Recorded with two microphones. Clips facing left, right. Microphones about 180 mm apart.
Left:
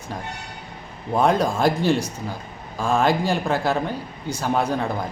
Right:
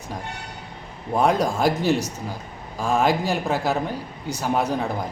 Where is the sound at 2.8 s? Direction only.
5° right (ahead or behind).